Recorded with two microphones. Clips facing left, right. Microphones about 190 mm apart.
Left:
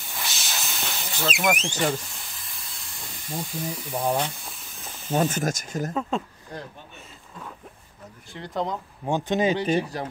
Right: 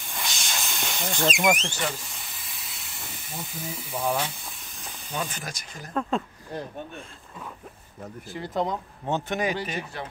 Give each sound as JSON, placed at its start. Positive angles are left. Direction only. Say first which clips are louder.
{"t": 0.0, "sound": "hiss", "louder": "even", "side_deg": 5}
{"t": 4.0, "sound": "speech", "louder": "left 2 dB", "side_deg": 25}
{"t": 4.5, "sound": "hiss", "louder": "left 1 dB", "side_deg": 0}
{"t": 5.1, "sound": "speech", "louder": "left 10 dB", "side_deg": 45}
{"t": 5.9, "sound": "speech", "louder": "right 3 dB", "side_deg": 0}
{"t": 8.3, "sound": "speech", "louder": "right 1 dB", "side_deg": 0}
{"t": 9.0, "sound": "speech", "louder": "left 4 dB", "side_deg": 15}